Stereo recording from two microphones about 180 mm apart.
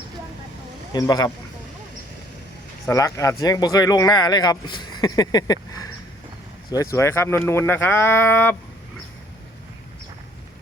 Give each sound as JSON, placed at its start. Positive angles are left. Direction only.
{"t": 0.9, "sound": "speech", "side_deg": 20}
{"t": 2.9, "sound": "speech", "side_deg": 15}
{"t": 6.9, "sound": "speech", "side_deg": 15}